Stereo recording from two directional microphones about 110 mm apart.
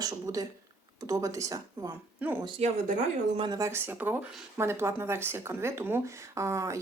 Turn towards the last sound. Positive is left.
turn(degrees=-25)  # may be behind; listen again after turning